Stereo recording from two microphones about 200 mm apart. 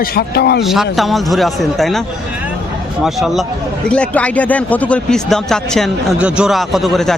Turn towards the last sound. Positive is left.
turn(degrees=0)  # may be behind; listen again after turning